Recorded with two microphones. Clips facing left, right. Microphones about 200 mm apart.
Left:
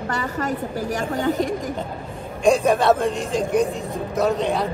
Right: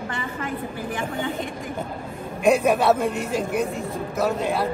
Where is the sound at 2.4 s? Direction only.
5° right (ahead or behind).